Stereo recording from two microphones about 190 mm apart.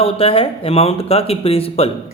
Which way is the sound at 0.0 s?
30° left (ahead or behind).